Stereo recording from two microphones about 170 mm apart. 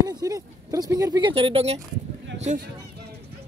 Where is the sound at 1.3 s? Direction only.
35° right (ahead or behind).